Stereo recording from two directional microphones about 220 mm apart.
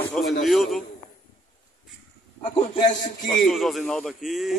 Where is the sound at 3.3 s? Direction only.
Centre (ahead or behind).